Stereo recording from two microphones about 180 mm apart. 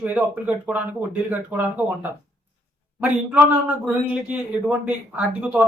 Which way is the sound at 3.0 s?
10° right (ahead or behind).